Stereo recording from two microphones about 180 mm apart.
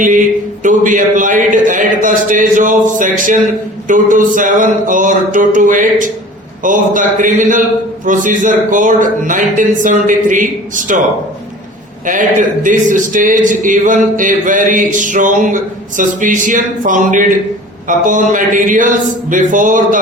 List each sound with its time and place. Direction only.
0.6 s a man's voice: 45° right (ahead or behind)
12.0 s a man's voice: 45° right (ahead or behind)